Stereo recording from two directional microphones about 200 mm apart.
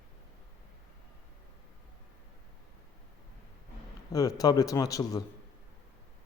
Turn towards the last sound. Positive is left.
turn(degrees=15)  # may be behind; listen again after turning